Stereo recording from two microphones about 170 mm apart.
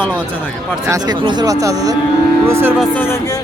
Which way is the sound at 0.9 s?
20° right (ahead or behind).